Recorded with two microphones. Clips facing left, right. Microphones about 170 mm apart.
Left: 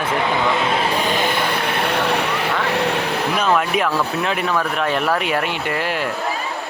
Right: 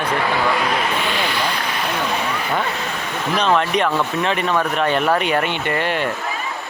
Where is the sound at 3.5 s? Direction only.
5° left (ahead or behind).